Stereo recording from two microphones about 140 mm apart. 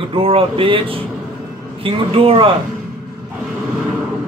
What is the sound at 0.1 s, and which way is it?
Speech, 40° right (ahead or behind).